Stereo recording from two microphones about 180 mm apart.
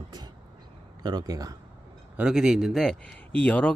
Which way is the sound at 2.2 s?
5° right (ahead or behind).